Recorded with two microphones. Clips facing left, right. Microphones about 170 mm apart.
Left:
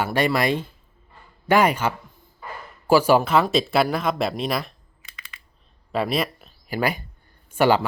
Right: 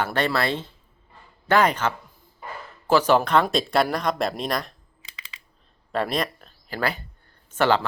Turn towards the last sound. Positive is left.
turn(degrees=10)  # may be behind; listen again after turning